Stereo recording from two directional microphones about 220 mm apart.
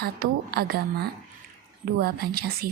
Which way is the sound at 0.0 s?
45° right (ahead or behind).